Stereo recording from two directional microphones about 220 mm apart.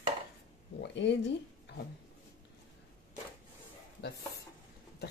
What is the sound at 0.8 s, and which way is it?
Speech, 55° left (ahead or behind).